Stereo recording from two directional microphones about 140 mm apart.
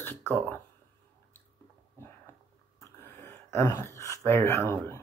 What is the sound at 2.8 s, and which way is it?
Speech, 15° left (ahead or behind).